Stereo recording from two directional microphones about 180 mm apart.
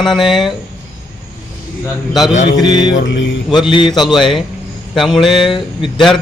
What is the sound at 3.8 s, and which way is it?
Speech, 25° left (ahead or behind).